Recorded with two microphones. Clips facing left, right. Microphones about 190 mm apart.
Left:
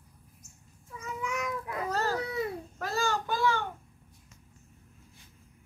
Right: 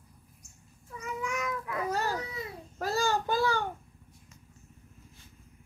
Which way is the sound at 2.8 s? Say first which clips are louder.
Right 2 dB; 35° right (ahead or behind).